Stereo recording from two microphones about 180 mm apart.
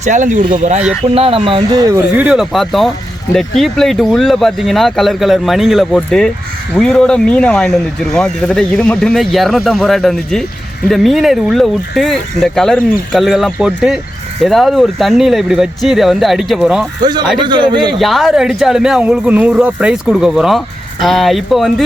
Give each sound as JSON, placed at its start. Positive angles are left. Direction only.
{"t": 0.0, "sound": "speech", "side_deg": -45}
{"t": 1.0, "sound": "speech", "side_deg": -30}
{"t": 1.9, "sound": "speech", "side_deg": -10}
{"t": 17.0, "sound": "a man's voice", "side_deg": -25}
{"t": 18.0, "sound": "speech", "side_deg": 0}